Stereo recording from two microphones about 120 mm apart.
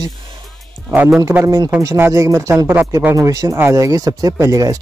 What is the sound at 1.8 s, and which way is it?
Speech, 25° right (ahead or behind).